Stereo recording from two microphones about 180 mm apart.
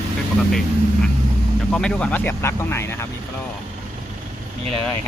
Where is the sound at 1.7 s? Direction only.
5° left (ahead or behind).